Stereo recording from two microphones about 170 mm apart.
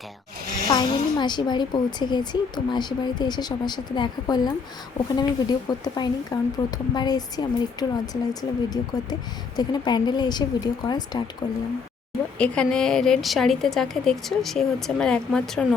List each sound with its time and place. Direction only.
0.7 s a woman's voice: 25° left (ahead or behind)
12.4 s a woman's voice: 5° left (ahead or behind)